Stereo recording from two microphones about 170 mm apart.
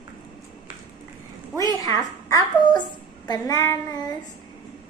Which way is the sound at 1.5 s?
20° left (ahead or behind).